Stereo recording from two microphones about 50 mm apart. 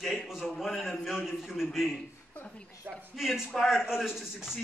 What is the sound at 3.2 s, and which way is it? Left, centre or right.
A man's voice, centre.